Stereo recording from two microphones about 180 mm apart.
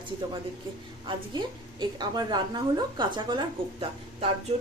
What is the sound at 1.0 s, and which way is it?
A woman's voice, 25° right (ahead or behind).